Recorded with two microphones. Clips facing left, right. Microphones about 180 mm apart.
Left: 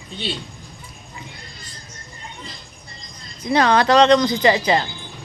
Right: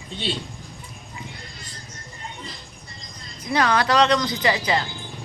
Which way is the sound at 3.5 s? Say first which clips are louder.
Left 5 dB; 30° left (ahead or behind).